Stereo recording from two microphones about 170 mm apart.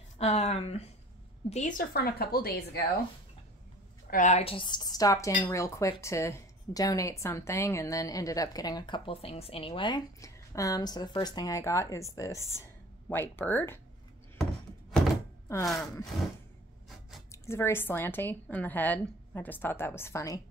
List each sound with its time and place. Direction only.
0.2 s a woman's voice: 40° left (ahead or behind); by 2.8 s 65° left (ahead or behind)
4.1 s a woman's voice: 45° left (ahead or behind); by 13.7 s 10° left (ahead or behind)
14.4 s a sound: centre (ahead or behind)
17.3 s a woman's voice: 15° left (ahead or behind)